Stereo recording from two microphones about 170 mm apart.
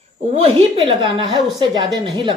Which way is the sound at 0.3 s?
30° right (ahead or behind).